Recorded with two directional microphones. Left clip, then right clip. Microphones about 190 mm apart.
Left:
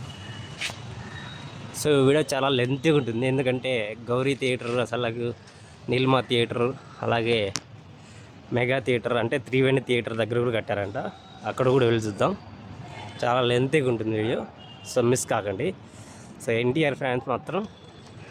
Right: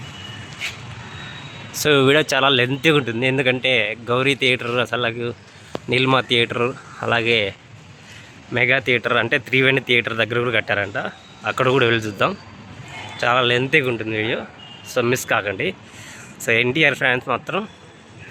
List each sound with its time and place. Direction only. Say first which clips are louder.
1.7 s speech: right 6 dB; 5° left (ahead or behind)
8.5 s speech: right 7 dB; 15° left (ahead or behind)